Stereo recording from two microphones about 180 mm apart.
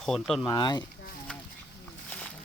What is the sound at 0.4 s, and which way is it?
Speech, 25° left (ahead or behind).